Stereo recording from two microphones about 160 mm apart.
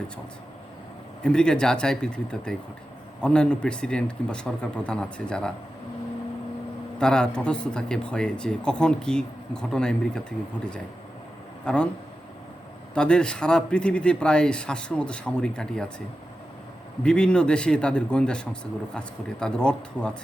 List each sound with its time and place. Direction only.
1.2 s speech: 5° left (ahead or behind)
7.0 s a man's voice: 5° left (ahead or behind)
12.9 s speech: 5° left (ahead or behind)
17.0 s speech: 5° left (ahead or behind)